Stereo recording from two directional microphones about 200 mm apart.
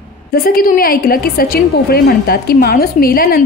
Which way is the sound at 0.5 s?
45° left (ahead or behind).